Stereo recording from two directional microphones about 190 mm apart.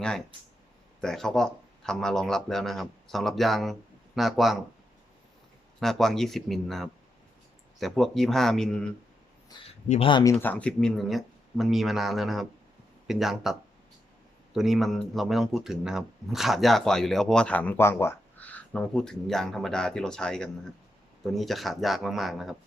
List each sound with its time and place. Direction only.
1.0 s speech: centre (ahead or behind)
5.8 s speech: centre (ahead or behind)
9.5 s speech: 20° left (ahead or behind)
10.3 s speech: 5° left (ahead or behind)